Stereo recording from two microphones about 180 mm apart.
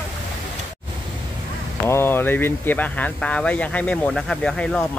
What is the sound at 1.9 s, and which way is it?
Speech, 10° left (ahead or behind).